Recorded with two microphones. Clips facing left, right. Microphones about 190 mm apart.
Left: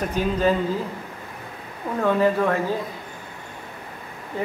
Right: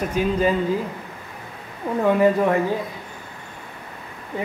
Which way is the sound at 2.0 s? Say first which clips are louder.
Right 2 dB; 15° right (ahead or behind).